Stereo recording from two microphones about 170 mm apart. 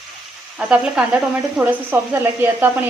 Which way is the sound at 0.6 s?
5° right (ahead or behind).